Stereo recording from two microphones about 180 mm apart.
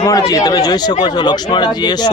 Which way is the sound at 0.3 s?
20° left (ahead or behind).